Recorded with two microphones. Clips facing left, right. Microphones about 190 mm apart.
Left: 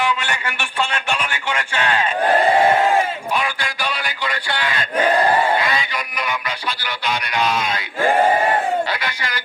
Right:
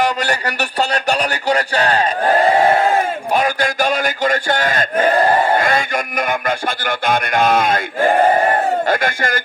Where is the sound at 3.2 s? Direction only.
45° right (ahead or behind).